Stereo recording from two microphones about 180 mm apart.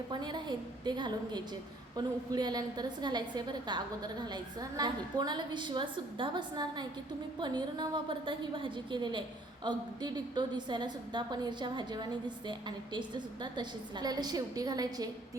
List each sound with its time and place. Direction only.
0.1 s a woman's voice: 25° right (ahead or behind)